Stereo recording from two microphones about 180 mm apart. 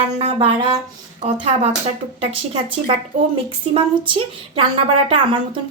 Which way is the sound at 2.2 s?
30° right (ahead or behind).